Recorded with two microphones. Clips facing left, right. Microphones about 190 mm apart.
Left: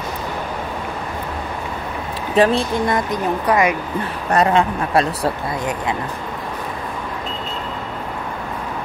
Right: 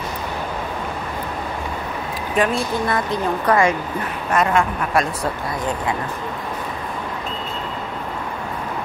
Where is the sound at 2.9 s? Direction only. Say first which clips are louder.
Left 1 dB; 15° left (ahead or behind).